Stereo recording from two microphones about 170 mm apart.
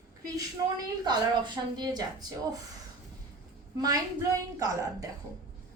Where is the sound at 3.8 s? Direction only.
20° right (ahead or behind).